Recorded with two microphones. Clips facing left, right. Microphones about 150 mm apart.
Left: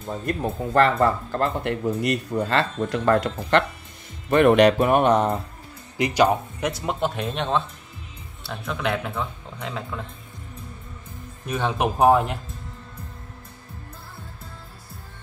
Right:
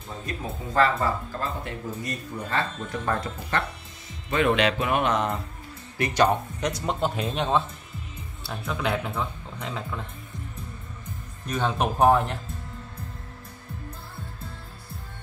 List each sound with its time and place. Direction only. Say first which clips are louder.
0.2 s speech: left 7 dB; 55° left (ahead or behind); by 3.6 s 75° left (ahead or behind)
4.3 s speech: left 7 dB; 55° left (ahead or behind); by 5.4 s 35° left (ahead or behind)
5.9 s speech: left 3 dB; 15° left (ahead or behind)
11.4 s speech: left 2 dB; 10° left (ahead or behind)